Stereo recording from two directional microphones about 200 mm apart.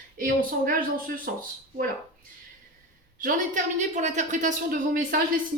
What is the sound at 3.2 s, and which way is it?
A woman's voice, 40° right (ahead or behind).